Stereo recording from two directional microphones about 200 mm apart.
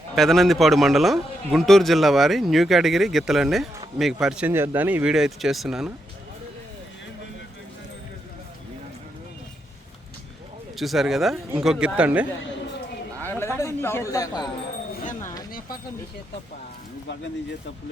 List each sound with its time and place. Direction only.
0.2 s a man's voice: centre (ahead or behind)
10.8 s a man's voice: centre (ahead or behind)
13.2 s speech: 10° left (ahead or behind)